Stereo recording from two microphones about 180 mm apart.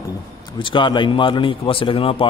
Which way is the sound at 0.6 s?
25° left (ahead or behind).